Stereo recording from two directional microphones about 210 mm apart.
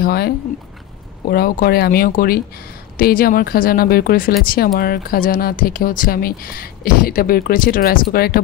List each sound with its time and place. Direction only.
0.0 s speech: 50° left (ahead or behind)
1.3 s speech: 45° left (ahead or behind)